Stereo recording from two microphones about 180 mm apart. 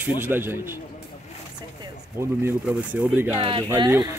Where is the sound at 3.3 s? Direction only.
25° right (ahead or behind).